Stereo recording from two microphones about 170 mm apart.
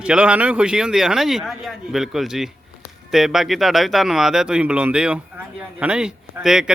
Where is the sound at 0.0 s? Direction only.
5° right (ahead or behind).